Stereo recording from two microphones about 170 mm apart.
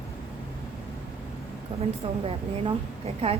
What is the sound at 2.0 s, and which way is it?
Speech, 35° right (ahead or behind).